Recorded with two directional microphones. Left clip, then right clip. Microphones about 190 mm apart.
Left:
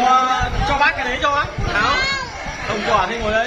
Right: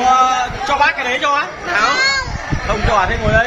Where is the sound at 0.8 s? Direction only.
45° right (ahead or behind).